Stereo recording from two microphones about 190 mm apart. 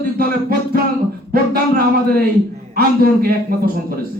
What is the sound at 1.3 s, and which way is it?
A man's voice, 50° right (ahead or behind).